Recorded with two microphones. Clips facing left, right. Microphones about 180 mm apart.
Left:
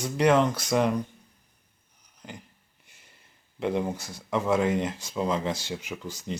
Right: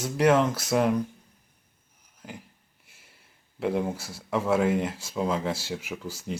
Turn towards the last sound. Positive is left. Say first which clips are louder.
# right 1 dB
turn(degrees=-5)  # may be behind; listen again after turning